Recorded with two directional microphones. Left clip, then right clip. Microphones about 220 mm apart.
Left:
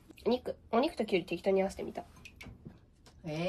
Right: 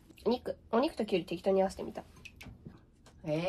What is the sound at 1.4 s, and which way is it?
Speech, 60° right (ahead or behind).